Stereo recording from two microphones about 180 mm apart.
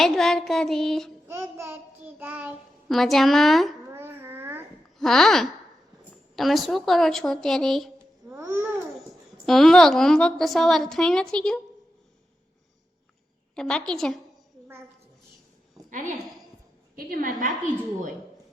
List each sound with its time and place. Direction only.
0.0 s a woman's voice: centre (ahead or behind)
1.3 s child singing: 15° right (ahead or behind)
2.9 s a woman's voice: centre (ahead or behind)
3.8 s babbling: 15° right (ahead or behind)
4.9 s a woman's voice: centre (ahead or behind)
8.3 s babbling: 10° right (ahead or behind)
9.5 s a woman's voice: centre (ahead or behind)
13.6 s a woman's voice: 5° left (ahead or behind)
15.9 s a woman's voice: 45° right (ahead or behind)